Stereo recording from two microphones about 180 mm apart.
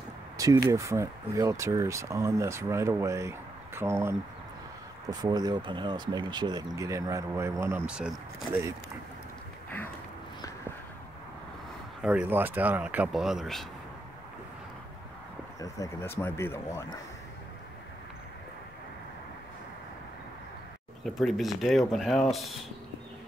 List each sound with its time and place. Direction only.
0.4 s speech: 20° right (ahead or behind)
12.0 s speech: 5° right (ahead or behind)
15.6 s speech: 15° left (ahead or behind)
21.0 s speech: centre (ahead or behind)